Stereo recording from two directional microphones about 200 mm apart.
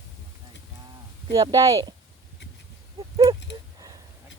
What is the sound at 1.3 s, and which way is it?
Speech, 20° right (ahead or behind).